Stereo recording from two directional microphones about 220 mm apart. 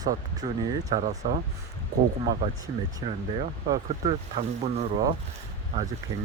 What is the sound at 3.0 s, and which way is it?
Speech, 20° right (ahead or behind).